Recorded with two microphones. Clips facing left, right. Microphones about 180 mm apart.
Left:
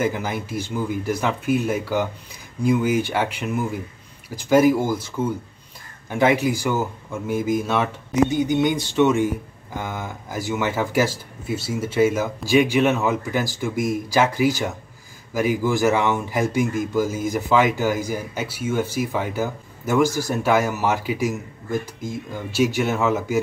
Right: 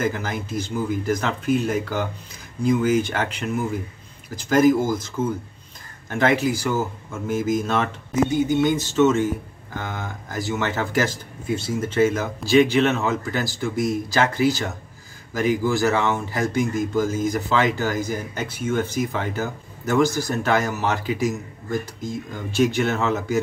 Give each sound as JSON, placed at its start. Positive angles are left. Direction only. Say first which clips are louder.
{"t": 0.0, "sound": "speech", "louder": "left 1 dB", "side_deg": 10}
{"t": 7.5, "sound": "speech", "louder": "left 1 dB", "side_deg": 10}
{"t": 8.1, "sound": "speech", "louder": "left 1 dB", "side_deg": 20}